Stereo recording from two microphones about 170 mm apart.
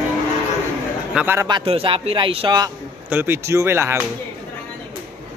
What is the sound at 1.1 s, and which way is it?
Speech, 15° right (ahead or behind).